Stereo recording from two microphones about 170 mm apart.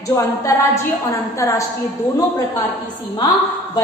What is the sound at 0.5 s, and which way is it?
Speech, 20° left (ahead or behind).